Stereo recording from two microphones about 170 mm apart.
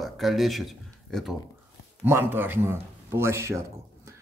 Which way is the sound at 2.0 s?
15° right (ahead or behind).